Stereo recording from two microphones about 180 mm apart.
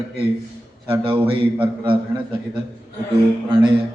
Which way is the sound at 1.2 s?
30° right (ahead or behind).